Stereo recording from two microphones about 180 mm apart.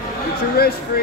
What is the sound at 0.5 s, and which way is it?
Speech, 60° left (ahead or behind).